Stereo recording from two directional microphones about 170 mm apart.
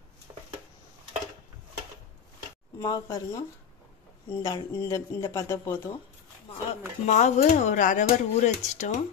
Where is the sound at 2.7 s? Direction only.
20° left (ahead or behind).